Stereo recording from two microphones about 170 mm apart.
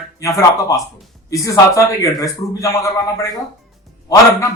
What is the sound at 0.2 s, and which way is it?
Speech, 20° left (ahead or behind).